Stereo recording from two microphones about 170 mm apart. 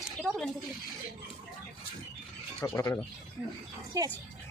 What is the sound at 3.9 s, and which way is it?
Speech, 20° right (ahead or behind).